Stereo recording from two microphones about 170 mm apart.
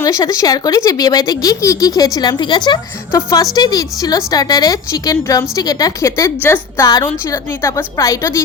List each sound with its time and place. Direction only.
0.0 s speech: 20° left (ahead or behind)